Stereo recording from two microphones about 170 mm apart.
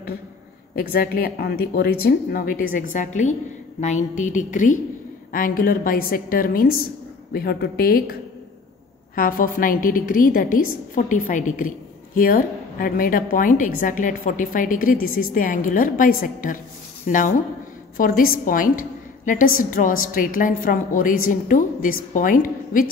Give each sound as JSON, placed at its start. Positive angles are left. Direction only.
{"t": 0.7, "sound": "a woman's voice", "side_deg": 60}